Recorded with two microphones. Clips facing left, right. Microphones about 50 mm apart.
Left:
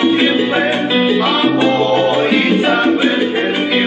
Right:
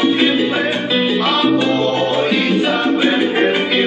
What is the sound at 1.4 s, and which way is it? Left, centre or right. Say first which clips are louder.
Music: left 2 dB; left.